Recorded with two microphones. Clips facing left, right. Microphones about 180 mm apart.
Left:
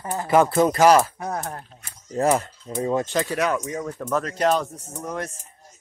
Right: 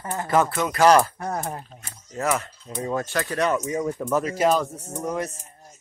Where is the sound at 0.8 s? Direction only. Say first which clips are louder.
Right 4 dB; 5° left (ahead or behind).